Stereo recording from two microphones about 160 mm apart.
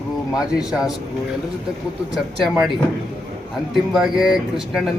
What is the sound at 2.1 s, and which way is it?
Speech, centre (ahead or behind).